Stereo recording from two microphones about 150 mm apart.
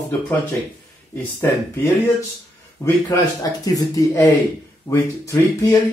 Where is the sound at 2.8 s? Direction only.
25° left (ahead or behind).